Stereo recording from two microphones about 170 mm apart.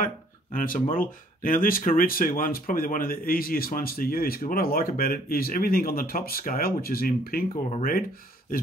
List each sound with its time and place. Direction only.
0.0 s speech: 50° left (ahead or behind)